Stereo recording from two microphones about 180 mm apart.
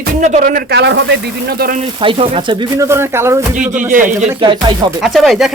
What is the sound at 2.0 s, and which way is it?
Speech, 30° right (ahead or behind).